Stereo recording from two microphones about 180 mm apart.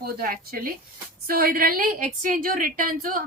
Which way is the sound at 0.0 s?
55° right (ahead or behind).